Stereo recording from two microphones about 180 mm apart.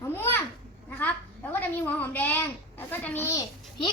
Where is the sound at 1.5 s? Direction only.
10° left (ahead or behind).